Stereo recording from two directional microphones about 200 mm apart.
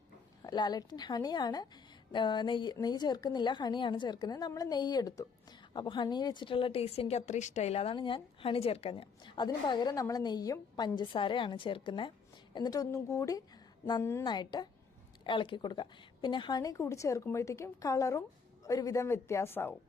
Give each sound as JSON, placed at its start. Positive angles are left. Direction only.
{"t": 0.4, "sound": "a woman's voice", "side_deg": 20}